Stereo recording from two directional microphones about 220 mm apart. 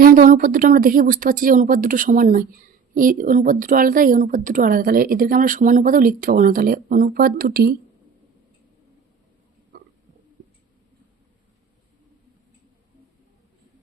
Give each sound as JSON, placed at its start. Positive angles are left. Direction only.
{"t": 0.0, "sound": "speech", "side_deg": -40}
{"t": 9.7, "sound": "stomach rumble", "side_deg": -45}